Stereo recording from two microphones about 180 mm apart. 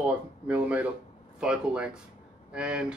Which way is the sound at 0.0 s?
5° right (ahead or behind).